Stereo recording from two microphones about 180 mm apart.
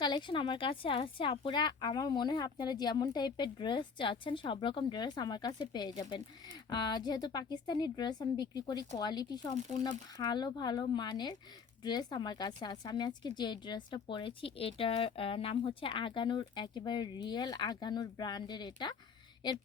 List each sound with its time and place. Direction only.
0.0 s a woman's voice: 25° left (ahead or behind)